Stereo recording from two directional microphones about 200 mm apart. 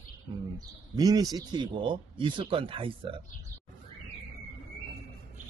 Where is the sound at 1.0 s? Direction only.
20° right (ahead or behind).